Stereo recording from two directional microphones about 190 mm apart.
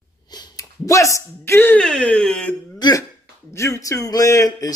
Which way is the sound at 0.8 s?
15° left (ahead or behind).